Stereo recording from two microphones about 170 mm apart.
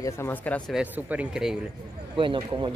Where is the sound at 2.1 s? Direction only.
30° right (ahead or behind).